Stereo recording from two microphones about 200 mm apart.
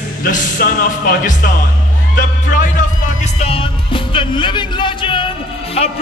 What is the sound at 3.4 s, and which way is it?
Music, 30° left (ahead or behind).